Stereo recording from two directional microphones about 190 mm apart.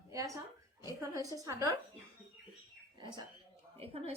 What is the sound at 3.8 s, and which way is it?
Speech, 30° right (ahead or behind).